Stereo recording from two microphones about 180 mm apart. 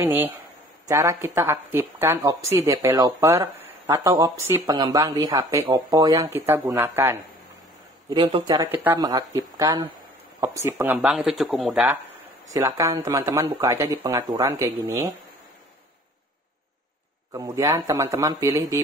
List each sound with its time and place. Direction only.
0.0 s speech: 10° right (ahead or behind)
4.7 s speech: 25° right (ahead or behind)
8.1 s speech: 25° right (ahead or behind)
8.7 s speech: 10° right (ahead or behind)
12.5 s speech: 20° right (ahead or behind)
17.3 s speech: 15° right (ahead or behind)